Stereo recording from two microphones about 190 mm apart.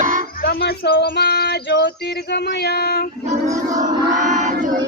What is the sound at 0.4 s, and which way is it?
Speech, 55° left (ahead or behind).